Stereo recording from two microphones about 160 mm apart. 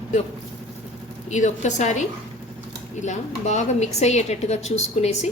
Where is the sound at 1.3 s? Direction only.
50° left (ahead or behind).